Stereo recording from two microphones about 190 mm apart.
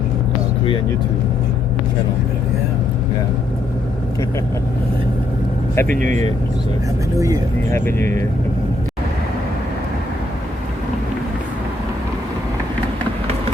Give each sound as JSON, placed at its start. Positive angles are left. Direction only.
{"t": 5.7, "sound": "speech", "side_deg": 10}
{"t": 7.2, "sound": "speech", "side_deg": -20}
{"t": 7.7, "sound": "speech", "side_deg": 10}